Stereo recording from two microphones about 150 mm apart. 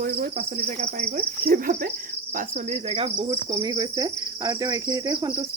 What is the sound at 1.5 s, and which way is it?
Speech, 70° right (ahead or behind).